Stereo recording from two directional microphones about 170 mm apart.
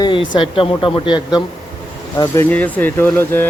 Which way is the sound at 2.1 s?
15° left (ahead or behind).